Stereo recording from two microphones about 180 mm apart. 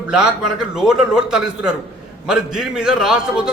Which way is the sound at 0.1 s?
5° right (ahead or behind).